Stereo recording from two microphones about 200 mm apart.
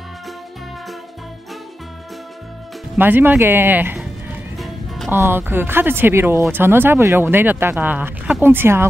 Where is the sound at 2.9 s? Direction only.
10° right (ahead or behind).